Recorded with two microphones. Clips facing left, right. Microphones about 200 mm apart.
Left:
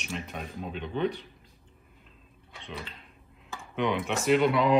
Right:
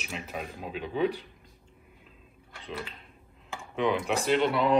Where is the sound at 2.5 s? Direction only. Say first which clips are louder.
Right 2 dB; centre (ahead or behind).